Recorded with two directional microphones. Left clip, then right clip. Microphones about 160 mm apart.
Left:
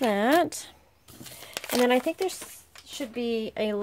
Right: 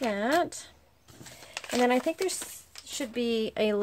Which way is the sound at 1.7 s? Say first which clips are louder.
Left 2 dB; 30° left (ahead or behind).